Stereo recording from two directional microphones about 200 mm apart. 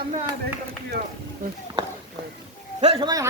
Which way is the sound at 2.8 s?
30° right (ahead or behind).